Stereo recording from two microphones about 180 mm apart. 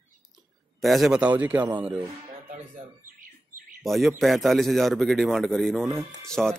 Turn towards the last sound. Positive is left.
turn(degrees=5)  # may be behind; listen again after turning